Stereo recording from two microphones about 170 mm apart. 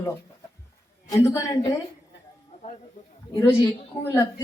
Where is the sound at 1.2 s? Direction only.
20° left (ahead or behind).